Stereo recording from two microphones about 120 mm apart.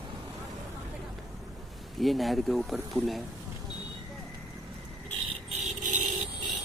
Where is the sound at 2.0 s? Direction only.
Centre (ahead or behind).